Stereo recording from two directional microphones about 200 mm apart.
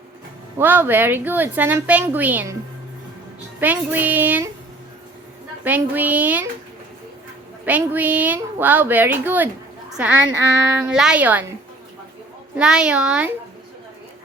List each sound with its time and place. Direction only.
0.6 s a woman's voice: 10° right (ahead or behind)
3.6 s a woman's voice: 10° right (ahead or behind)
5.6 s a woman's voice: 10° right (ahead or behind)
7.6 s a woman's voice: 10° right (ahead or behind)
12.5 s a child's voice: 5° right (ahead or behind)